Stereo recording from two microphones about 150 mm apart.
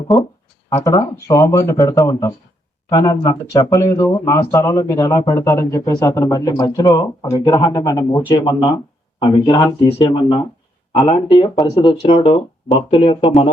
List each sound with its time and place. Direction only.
0.7 s speech: 25° left (ahead or behind)